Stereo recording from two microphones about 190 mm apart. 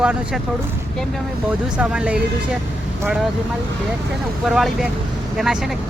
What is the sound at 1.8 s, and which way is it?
Speech, 5° right (ahead or behind).